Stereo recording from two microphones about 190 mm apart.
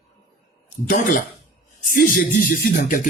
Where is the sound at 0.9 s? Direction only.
45° left (ahead or behind).